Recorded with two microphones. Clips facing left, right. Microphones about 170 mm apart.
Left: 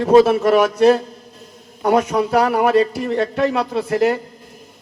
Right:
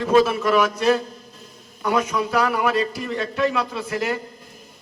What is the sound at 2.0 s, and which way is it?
Speech, 60° left (ahead or behind).